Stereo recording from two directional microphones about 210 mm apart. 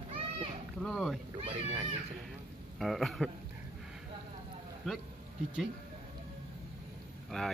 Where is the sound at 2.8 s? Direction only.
Centre (ahead or behind).